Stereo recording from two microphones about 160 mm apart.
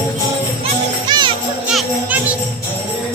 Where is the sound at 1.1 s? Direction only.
30° right (ahead or behind).